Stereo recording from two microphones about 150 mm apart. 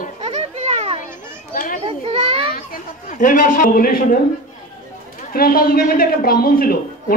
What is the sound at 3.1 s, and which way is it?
Speech, 60° left (ahead or behind).